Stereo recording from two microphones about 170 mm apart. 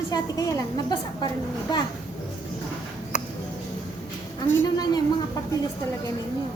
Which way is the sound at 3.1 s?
50° left (ahead or behind).